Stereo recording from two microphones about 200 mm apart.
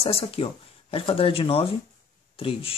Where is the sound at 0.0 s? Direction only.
30° left (ahead or behind).